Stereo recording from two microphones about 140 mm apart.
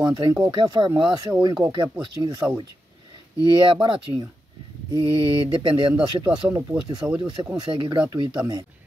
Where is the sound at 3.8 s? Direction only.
35° right (ahead or behind).